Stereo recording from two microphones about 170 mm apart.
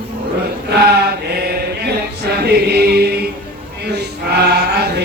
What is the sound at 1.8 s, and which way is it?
Music, 70° right (ahead or behind).